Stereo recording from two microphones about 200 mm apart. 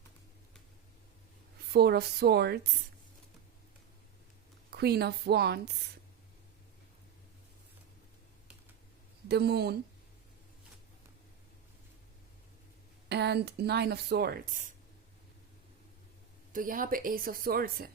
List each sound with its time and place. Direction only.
1.7 s speech: 55° right (ahead or behind)
4.7 s a woman's voice: 55° right (ahead or behind)
9.3 s a woman's voice: 55° right (ahead or behind)
13.1 s speech: 55° right (ahead or behind)
16.5 s speech: 45° right (ahead or behind)